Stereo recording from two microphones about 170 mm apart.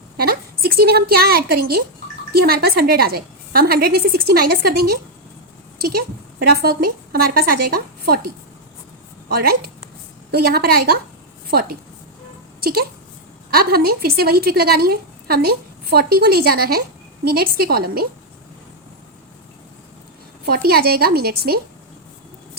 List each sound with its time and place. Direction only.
0.2 s a woman's voice: 65° right (ahead or behind)
6.6 s a woman's voice: 65° right (ahead or behind)
9.3 s a woman's voice: 60° right (ahead or behind)
13.5 s a woman's voice: 65° right (ahead or behind)
20.4 s a woman's voice: 65° right (ahead or behind)